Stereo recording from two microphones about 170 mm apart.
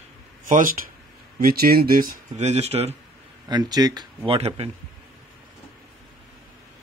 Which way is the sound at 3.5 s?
25° right (ahead or behind).